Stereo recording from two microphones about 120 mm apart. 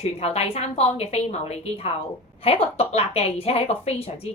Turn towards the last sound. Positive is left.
turn(degrees=60)  # may be behind; listen again after turning